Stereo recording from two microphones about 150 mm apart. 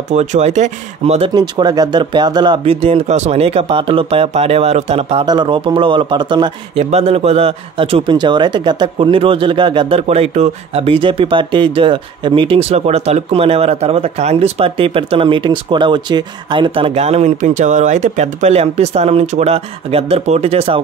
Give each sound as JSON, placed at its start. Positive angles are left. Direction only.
{"t": 0.1, "sound": "speech", "side_deg": -45}
{"t": 1.3, "sound": "a man's voice", "side_deg": -30}
{"t": 5.2, "sound": "a man's voice", "side_deg": -30}
{"t": 6.8, "sound": "a man's voice", "side_deg": -45}